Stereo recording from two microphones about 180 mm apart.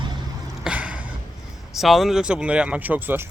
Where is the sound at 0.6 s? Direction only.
5° right (ahead or behind).